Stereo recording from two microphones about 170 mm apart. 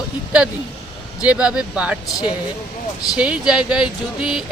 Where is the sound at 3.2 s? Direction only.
5° right (ahead or behind).